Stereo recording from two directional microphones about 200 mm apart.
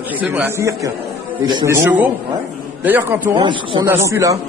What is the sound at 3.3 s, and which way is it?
A man's voice, 25° right (ahead or behind).